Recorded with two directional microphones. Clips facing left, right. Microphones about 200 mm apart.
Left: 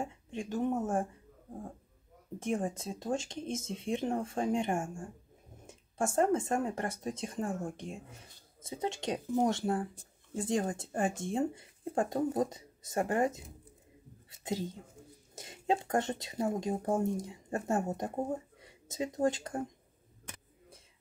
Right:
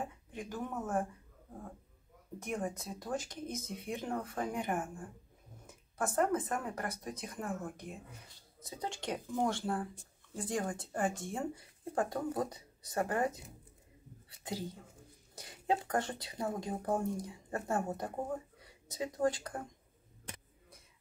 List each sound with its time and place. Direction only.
0.0 s a woman's voice: 25° left (ahead or behind)
2.4 s speech: 30° left (ahead or behind)
14.4 s speech: 20° left (ahead or behind)